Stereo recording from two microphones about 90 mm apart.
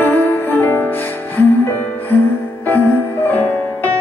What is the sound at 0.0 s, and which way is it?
Music, 20° left (ahead or behind).